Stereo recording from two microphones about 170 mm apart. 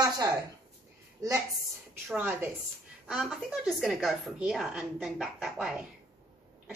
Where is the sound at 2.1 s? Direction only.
10° right (ahead or behind).